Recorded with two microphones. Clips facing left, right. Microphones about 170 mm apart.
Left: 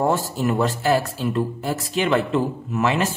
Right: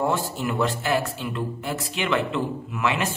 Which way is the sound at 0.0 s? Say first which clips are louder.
Left 4 dB; 40° left (ahead or behind).